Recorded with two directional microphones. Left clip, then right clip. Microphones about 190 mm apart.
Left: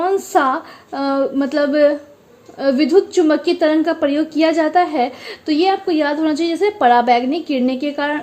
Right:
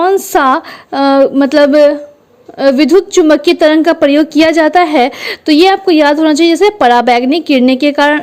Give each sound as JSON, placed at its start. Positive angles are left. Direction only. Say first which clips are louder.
{"t": 0.0, "sound": "a woman's voice", "louder": "right 6 dB", "side_deg": -35}